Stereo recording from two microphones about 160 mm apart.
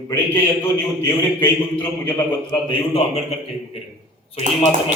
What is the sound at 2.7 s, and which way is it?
Speech, 40° left (ahead or behind).